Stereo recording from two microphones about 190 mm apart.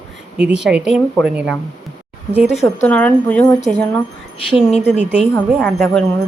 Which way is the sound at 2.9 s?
5° left (ahead or behind).